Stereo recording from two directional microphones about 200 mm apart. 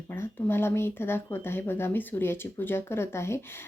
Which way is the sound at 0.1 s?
10° left (ahead or behind).